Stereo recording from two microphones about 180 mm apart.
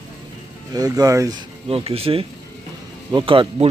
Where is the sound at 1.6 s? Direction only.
35° right (ahead or behind).